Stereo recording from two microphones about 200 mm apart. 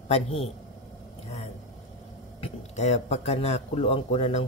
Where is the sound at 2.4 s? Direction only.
35° left (ahead or behind).